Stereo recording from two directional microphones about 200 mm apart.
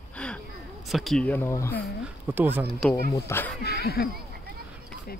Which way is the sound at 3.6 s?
50° left (ahead or behind).